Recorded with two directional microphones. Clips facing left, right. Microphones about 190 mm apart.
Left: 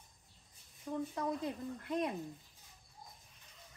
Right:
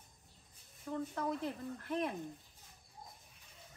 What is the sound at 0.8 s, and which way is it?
Speech, 15° left (ahead or behind).